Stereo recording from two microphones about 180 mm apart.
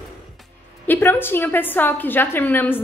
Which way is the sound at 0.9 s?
10° left (ahead or behind).